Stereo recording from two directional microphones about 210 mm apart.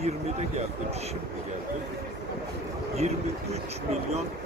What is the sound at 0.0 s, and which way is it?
Speech, 30° right (ahead or behind).